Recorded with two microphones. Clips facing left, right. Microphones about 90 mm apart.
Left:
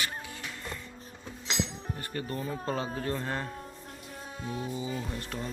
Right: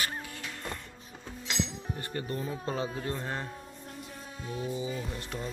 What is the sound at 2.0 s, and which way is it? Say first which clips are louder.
Music: even; 25° right (ahead or behind).